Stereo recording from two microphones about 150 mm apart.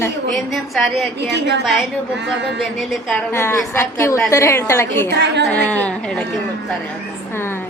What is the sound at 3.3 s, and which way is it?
A woman's voice, 15° left (ahead or behind).